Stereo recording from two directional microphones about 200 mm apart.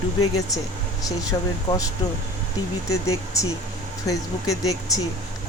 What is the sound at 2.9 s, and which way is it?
A woman's voice, 15° left (ahead or behind).